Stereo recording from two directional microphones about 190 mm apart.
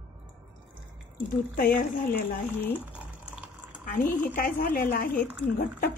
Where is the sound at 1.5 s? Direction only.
50° left (ahead or behind).